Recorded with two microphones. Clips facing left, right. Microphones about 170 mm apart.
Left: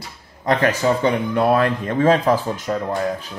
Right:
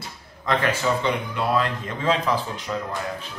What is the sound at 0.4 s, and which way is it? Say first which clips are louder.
Speech: left 5 dB; 40° left (ahead or behind).